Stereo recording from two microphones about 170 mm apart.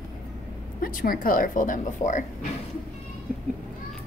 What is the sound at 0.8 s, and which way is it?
A woman's voice, 55° left (ahead or behind).